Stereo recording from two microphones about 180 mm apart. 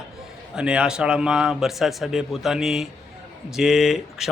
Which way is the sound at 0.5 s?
5° right (ahead or behind).